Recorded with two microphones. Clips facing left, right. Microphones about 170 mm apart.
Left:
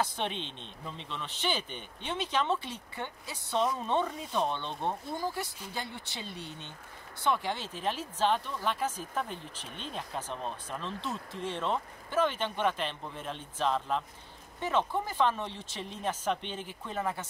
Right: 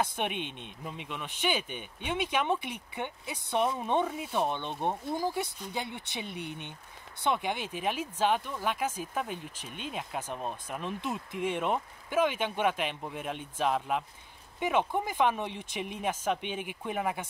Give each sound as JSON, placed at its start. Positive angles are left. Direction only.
{"t": 0.1, "sound": "speech", "side_deg": -15}